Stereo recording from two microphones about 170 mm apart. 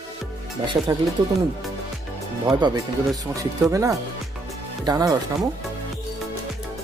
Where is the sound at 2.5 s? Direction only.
25° right (ahead or behind).